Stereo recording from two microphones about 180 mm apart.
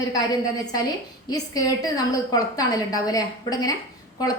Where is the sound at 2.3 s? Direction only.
20° left (ahead or behind).